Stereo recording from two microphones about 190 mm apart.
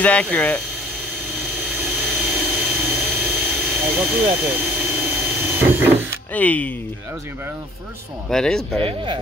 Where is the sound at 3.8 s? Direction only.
Centre (ahead or behind).